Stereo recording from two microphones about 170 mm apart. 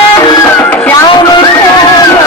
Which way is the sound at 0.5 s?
10° left (ahead or behind).